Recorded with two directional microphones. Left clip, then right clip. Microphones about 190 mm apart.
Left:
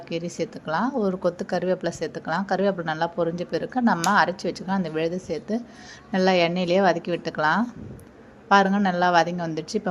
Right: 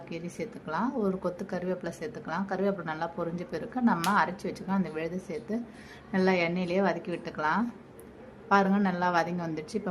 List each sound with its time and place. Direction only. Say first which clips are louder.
0.1 s a woman's voice: left 9 dB; 25° left (ahead or behind)